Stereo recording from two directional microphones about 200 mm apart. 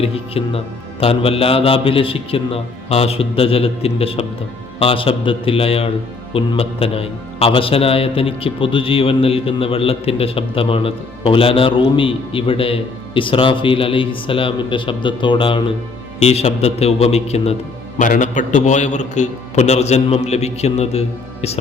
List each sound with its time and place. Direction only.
0.0 s a man's voice: 30° left (ahead or behind)